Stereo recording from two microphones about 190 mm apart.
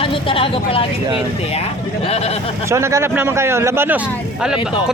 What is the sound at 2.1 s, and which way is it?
Speech, 35° left (ahead or behind).